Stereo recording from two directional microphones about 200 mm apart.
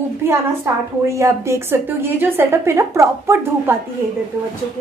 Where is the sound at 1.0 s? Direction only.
15° right (ahead or behind).